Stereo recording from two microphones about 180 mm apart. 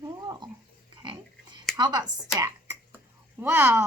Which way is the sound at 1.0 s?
25° right (ahead or behind).